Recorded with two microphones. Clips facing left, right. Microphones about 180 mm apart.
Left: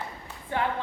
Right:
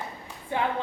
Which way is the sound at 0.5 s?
15° right (ahead or behind).